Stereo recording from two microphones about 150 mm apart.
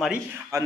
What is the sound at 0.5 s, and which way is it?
Speech, 20° right (ahead or behind).